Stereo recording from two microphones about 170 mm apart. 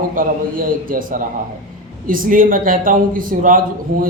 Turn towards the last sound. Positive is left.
turn(degrees=-55)  # may be behind; listen again after turning